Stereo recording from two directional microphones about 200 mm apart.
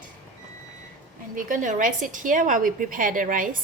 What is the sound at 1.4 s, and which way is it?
A woman's voice, 40° right (ahead or behind).